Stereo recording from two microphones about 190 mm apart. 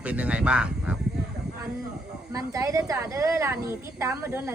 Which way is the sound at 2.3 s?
20° right (ahead or behind).